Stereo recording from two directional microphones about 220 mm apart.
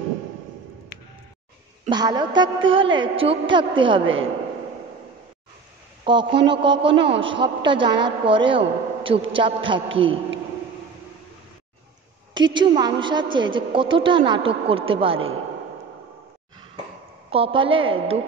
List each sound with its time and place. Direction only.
1.9 s a woman's voice: 20° right (ahead or behind)
6.0 s a woman's voice: 20° right (ahead or behind)
12.4 s a woman's voice: 20° right (ahead or behind)
17.3 s a woman's voice: 25° right (ahead or behind)